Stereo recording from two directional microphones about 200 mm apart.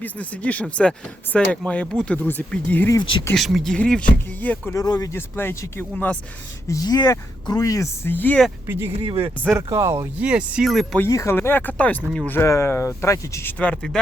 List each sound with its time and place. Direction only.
0.0 s speech: 5° left (ahead or behind)
3.0 s speech: 25° left (ahead or behind)
3.3 s speech: centre (ahead or behind)
8.6 s speech: 10° right (ahead or behind)
11.0 s speech: 15° left (ahead or behind)